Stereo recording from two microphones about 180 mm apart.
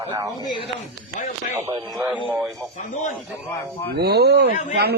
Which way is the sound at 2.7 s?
45° left (ahead or behind).